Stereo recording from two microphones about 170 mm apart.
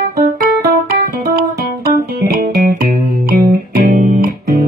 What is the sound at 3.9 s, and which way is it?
Music, 50° right (ahead or behind).